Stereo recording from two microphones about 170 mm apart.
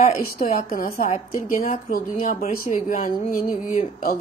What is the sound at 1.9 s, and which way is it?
A woman's voice, 45° left (ahead or behind).